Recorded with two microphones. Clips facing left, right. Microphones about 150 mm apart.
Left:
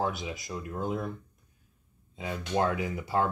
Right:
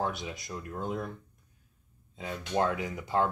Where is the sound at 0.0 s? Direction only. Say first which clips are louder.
Left 2 dB; 5° left (ahead or behind).